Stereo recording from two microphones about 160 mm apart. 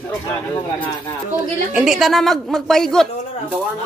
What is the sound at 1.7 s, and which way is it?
A woman's voice, 5° right (ahead or behind).